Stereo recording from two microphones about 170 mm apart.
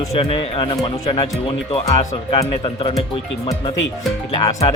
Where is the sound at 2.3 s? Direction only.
25° left (ahead or behind).